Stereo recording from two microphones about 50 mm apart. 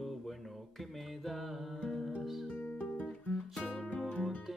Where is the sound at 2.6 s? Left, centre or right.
Left.